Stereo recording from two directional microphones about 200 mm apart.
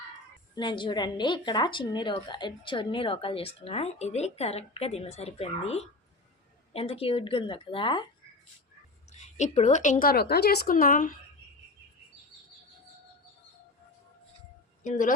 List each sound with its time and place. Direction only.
0.5 s a woman's voice: 25° left (ahead or behind)
9.1 s a woman's voice: 35° left (ahead or behind)
14.8 s a woman's voice: 40° left (ahead or behind)